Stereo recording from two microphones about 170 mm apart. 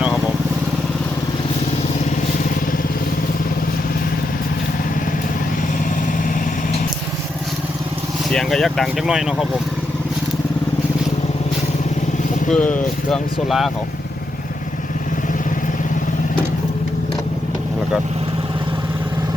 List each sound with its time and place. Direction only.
8.3 s speech: centre (ahead or behind)
12.5 s speech: 10° left (ahead or behind)